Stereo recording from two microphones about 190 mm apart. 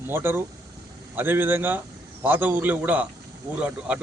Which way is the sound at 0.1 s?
10° right (ahead or behind).